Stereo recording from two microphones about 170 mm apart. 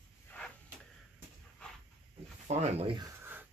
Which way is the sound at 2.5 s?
40° right (ahead or behind).